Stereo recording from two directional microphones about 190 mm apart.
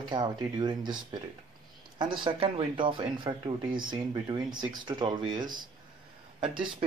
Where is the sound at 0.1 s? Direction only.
20° right (ahead or behind).